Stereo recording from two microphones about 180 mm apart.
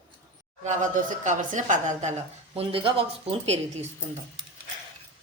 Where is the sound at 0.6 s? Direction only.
45° right (ahead or behind).